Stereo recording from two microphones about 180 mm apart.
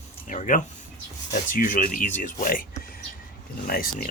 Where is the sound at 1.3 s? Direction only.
50° left (ahead or behind).